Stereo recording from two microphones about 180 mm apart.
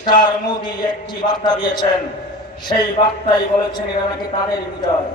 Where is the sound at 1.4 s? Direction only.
25° left (ahead or behind).